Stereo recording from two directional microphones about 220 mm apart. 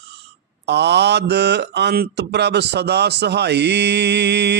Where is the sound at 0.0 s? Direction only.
50° right (ahead or behind).